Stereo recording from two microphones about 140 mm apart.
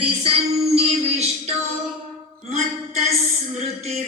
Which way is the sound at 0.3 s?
45° right (ahead or behind).